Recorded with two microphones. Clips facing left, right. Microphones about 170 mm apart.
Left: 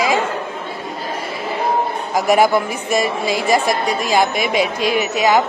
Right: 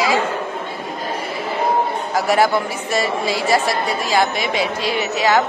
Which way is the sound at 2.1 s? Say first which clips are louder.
Left 3 dB; 15° left (ahead or behind).